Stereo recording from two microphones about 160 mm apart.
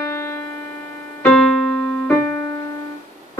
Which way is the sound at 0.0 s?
15° left (ahead or behind).